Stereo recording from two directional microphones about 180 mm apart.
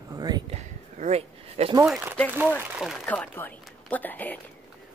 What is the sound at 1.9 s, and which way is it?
Speech, 10° right (ahead or behind).